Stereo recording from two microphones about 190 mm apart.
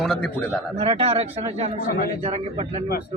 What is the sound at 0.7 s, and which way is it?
Speech, 35° right (ahead or behind).